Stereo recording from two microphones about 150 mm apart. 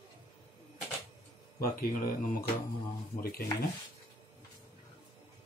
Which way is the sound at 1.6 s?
75° left (ahead or behind).